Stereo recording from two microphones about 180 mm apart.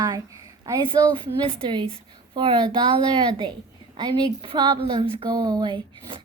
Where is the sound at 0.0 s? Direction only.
20° right (ahead or behind).